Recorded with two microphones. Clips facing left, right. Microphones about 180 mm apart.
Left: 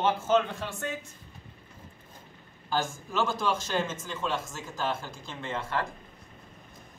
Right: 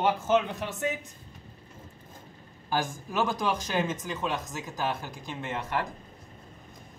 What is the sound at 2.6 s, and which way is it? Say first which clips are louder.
Speech: even; 15° right (ahead or behind).